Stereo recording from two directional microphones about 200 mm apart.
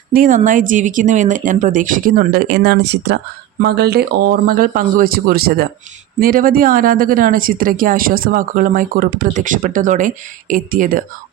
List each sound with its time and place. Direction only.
0.1 s speech: 40° right (ahead or behind)